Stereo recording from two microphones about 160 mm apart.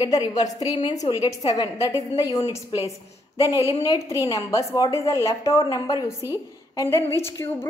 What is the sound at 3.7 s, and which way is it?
A woman's voice, 20° left (ahead or behind).